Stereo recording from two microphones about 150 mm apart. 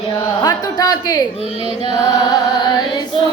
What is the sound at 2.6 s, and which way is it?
Music, 30° left (ahead or behind).